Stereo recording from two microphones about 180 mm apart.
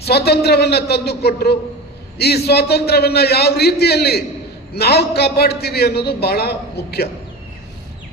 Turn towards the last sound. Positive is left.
turn(degrees=60)  # may be behind; listen again after turning